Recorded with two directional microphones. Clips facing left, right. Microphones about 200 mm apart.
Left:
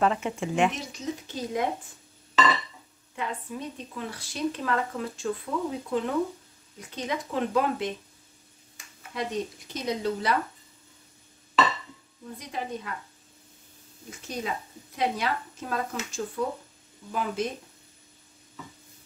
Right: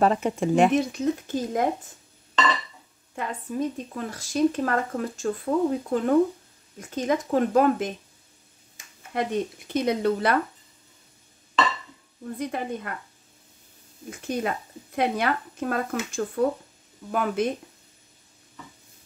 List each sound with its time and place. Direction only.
0.0 s speech: 40° right (ahead or behind)
0.7 s speech: 55° right (ahead or behind)
3.2 s speech: 45° right (ahead or behind)
9.1 s speech: 55° right (ahead or behind)
12.4 s speech: 55° right (ahead or behind)
14.2 s speech: 60° right (ahead or behind)